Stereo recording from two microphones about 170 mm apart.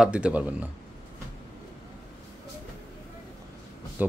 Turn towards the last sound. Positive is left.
turn(degrees=-10)  # may be behind; listen again after turning